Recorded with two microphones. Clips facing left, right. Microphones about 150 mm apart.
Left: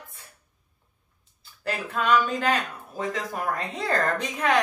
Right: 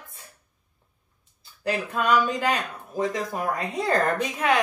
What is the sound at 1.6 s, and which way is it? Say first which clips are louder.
Speech: right 2 dB; 15° right (ahead or behind).